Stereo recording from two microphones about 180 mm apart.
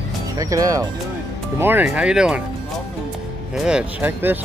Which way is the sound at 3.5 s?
5° right (ahead or behind).